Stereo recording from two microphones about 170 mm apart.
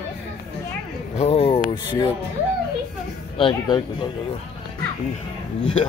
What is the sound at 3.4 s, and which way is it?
Speech, 25° left (ahead or behind).